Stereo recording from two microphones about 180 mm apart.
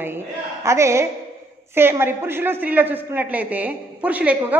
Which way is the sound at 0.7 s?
15° right (ahead or behind).